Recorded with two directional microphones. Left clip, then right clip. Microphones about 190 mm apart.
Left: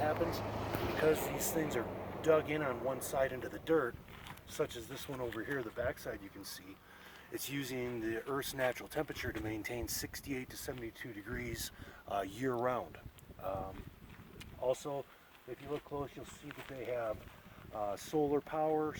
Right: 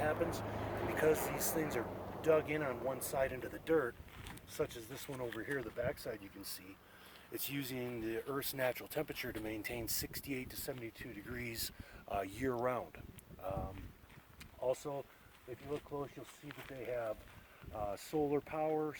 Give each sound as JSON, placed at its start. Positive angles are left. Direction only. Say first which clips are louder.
{"t": 0.2, "sound": "speech", "louder": "left 2 dB", "side_deg": -40}
{"t": 1.1, "sound": "speech", "louder": "left 1 dB", "side_deg": -30}
{"t": 1.4, "sound": "speech", "louder": "left 2 dB", "side_deg": -10}
{"t": 4.5, "sound": "speech", "louder": "left 2 dB", "side_deg": -5}
{"t": 7.3, "sound": "speech", "louder": "left 2 dB", "side_deg": -50}
{"t": 12.0, "sound": "speech", "louder": "left 2 dB", "side_deg": -25}